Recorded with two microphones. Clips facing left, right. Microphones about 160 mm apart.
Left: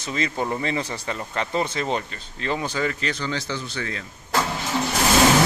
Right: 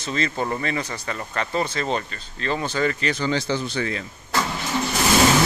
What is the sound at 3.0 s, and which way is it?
Speech, 5° right (ahead or behind).